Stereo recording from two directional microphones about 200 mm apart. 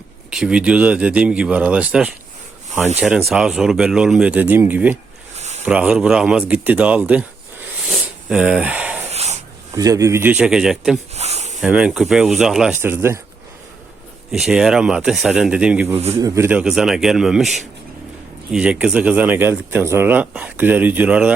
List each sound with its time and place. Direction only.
0.3 s speech: 5° right (ahead or behind)
7.9 s a sound: 5° right (ahead or behind)
9.0 s snort: 35° right (ahead or behind)
9.7 s speech: 15° right (ahead or behind)
11.1 s a sound: 30° right (ahead or behind)
11.6 s speech: 5° right (ahead or behind)
14.3 s speech: centre (ahead or behind)